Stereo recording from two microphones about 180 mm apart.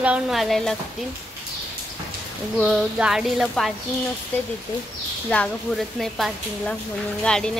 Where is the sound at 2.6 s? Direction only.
Centre (ahead or behind).